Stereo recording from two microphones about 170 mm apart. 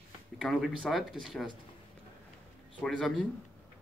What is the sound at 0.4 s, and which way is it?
Speech, centre (ahead or behind).